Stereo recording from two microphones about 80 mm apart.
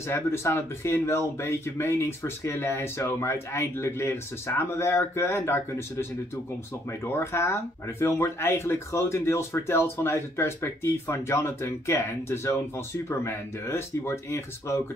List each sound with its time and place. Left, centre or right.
0.0 s speech: left